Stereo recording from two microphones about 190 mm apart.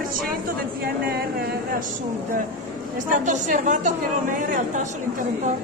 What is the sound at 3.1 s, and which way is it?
A woman's voice, 40° right (ahead or behind).